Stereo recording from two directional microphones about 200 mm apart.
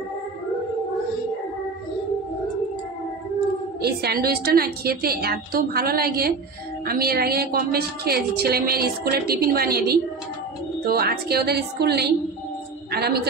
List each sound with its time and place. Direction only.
3.8 s a woman's voice: 50° right (ahead or behind)